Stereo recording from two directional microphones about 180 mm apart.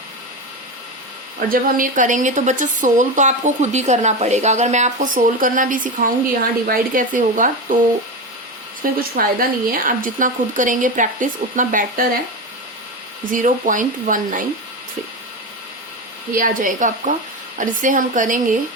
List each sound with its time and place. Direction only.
1.5 s a woman's voice: 50° right (ahead or behind)
8.8 s a woman's voice: 55° right (ahead or behind)
13.3 s a woman's voice: 45° right (ahead or behind)
16.3 s a woman's voice: 50° right (ahead or behind)